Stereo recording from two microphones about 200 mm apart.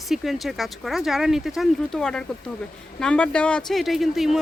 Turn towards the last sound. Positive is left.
turn(degrees=0)  # may be behind; listen again after turning